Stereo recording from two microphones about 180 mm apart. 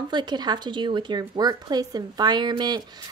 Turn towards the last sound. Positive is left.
turn(degrees=-25)  # may be behind; listen again after turning